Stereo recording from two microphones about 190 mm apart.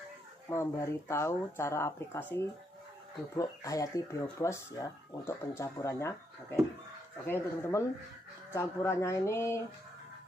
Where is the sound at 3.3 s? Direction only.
15° left (ahead or behind).